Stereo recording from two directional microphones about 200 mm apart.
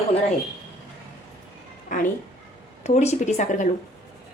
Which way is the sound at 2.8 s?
35° left (ahead or behind).